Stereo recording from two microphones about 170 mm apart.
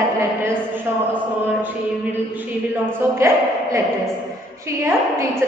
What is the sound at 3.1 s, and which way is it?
Speech, 15° right (ahead or behind).